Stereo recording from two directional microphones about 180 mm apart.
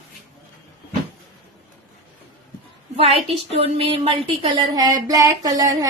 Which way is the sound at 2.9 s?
35° right (ahead or behind).